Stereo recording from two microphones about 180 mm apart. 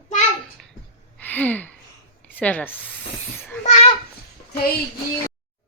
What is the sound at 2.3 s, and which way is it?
Speech, 10° left (ahead or behind).